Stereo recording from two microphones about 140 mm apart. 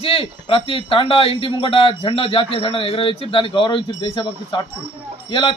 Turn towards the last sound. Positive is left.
turn(degrees=35)  # may be behind; listen again after turning